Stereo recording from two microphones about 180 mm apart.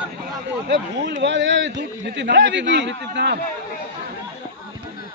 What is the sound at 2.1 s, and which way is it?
A man's voice, 80° right.